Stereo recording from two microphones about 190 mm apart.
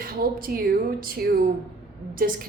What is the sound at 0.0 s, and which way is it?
A woman's voice, 50° right (ahead or behind).